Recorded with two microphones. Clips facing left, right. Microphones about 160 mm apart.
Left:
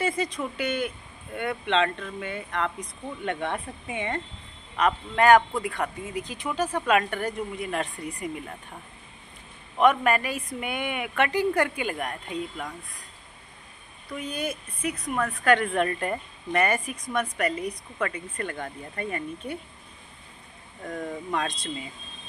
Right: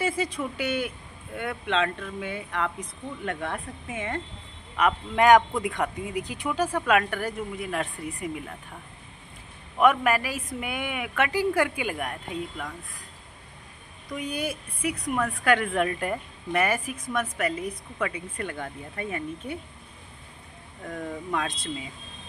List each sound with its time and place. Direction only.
0.0 s speech: 10° right (ahead or behind)
4.7 s speech: 15° right (ahead or behind)
9.8 s speech: 5° right (ahead or behind)
14.0 s speech: 15° right (ahead or behind)
20.8 s speech: centre (ahead or behind)